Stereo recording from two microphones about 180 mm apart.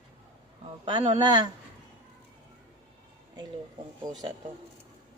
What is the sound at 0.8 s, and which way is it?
Speech, 25° right (ahead or behind).